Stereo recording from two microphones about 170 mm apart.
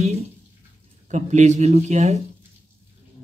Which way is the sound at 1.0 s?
45° right (ahead or behind).